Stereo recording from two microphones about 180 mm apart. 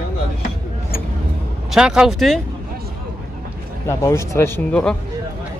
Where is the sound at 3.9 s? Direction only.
15° left (ahead or behind).